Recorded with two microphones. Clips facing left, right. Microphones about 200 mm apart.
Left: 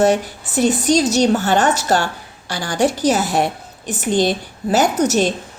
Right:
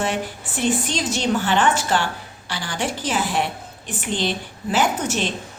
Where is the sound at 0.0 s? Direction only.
40° left (ahead or behind).